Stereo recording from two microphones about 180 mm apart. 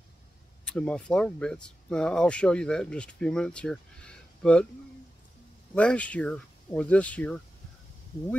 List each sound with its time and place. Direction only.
0.7 s speech: 5° left (ahead or behind)
5.8 s speech: 5° left (ahead or behind)